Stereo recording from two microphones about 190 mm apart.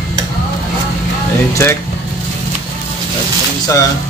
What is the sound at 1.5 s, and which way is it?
Speech, 15° left (ahead or behind).